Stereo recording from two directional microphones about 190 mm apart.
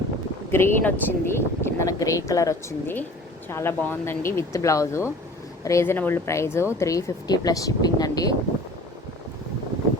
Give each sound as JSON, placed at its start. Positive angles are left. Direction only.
{"t": 0.5, "sound": "speech", "side_deg": 10}